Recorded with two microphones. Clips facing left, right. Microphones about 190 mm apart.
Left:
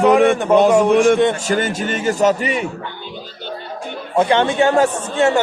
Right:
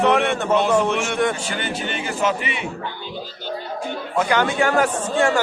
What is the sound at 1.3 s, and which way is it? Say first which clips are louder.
A man's voice: left 7 dB; 40° left (ahead or behind).